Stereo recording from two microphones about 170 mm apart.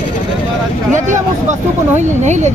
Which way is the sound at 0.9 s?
45° right (ahead or behind).